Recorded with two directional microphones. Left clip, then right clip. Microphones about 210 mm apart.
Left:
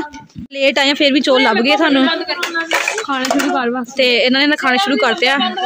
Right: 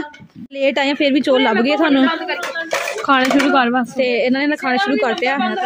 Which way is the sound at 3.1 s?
50° right (ahead or behind).